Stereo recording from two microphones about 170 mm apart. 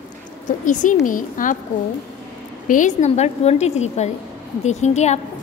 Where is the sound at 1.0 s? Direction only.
50° left (ahead or behind).